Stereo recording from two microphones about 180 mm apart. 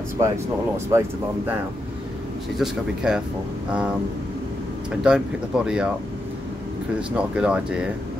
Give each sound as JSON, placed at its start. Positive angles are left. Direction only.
{"t": 0.9, "sound": "speech", "side_deg": -20}
{"t": 2.6, "sound": "speech", "side_deg": -5}
{"t": 5.0, "sound": "speech", "side_deg": -5}
{"t": 7.1, "sound": "speech", "side_deg": -5}